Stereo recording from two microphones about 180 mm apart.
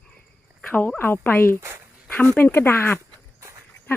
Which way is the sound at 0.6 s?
10° left (ahead or behind).